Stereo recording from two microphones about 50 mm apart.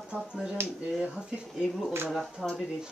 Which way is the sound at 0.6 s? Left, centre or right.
Right.